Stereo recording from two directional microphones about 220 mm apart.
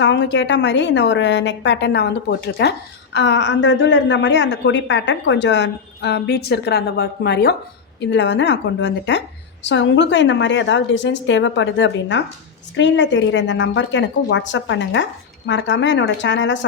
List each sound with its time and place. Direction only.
0.0 s a woman's voice: 55° left (ahead or behind)